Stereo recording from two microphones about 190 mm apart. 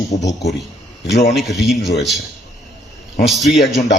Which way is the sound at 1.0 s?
60° left (ahead or behind).